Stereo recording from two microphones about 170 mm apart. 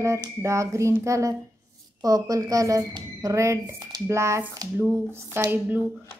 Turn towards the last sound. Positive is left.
turn(degrees=-10)  # may be behind; listen again after turning